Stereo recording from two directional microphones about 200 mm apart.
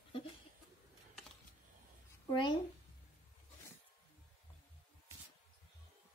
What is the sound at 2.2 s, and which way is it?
Speech, 25° left (ahead or behind).